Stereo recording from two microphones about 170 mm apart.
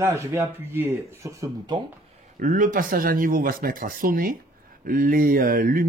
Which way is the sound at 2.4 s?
50° right (ahead or behind).